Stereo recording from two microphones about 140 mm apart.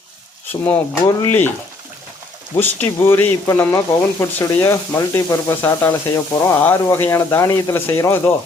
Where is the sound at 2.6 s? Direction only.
15° left (ahead or behind).